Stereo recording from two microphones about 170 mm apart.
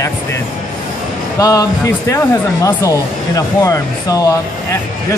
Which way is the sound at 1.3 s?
20° left (ahead or behind).